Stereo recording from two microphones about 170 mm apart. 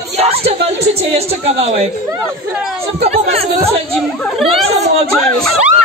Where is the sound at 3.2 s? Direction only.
35° right (ahead or behind).